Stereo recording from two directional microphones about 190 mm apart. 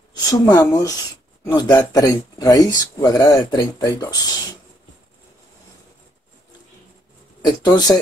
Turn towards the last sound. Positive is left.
turn(degrees=20)  # may be behind; listen again after turning